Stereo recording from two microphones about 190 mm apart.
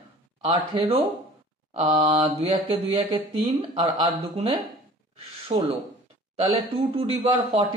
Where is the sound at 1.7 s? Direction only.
35° right (ahead or behind).